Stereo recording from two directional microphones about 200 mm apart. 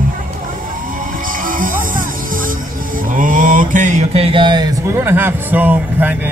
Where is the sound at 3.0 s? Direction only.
40° right (ahead or behind); by 4.7 s 20° right (ahead or behind).